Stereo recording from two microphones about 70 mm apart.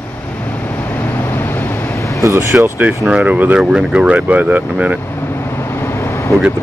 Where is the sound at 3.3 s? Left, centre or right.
Right.